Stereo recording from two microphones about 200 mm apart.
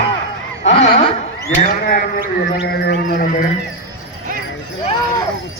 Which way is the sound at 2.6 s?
55° left (ahead or behind).